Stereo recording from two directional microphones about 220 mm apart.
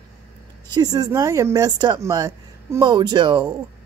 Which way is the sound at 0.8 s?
15° right (ahead or behind).